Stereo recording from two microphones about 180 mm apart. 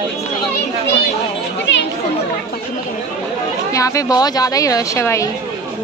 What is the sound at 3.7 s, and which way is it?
A woman's voice, 20° left (ahead or behind).